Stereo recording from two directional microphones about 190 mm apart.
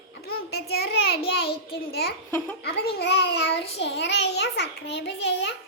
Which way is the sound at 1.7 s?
55° left (ahead or behind).